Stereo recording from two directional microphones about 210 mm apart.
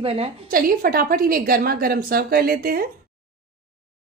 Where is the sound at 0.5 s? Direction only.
45° right (ahead or behind).